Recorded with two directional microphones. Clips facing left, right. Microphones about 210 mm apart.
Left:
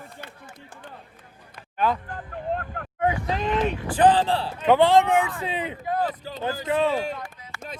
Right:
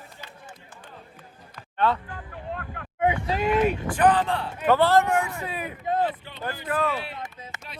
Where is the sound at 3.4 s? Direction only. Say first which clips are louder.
Right 5 dB; 10° right (ahead or behind).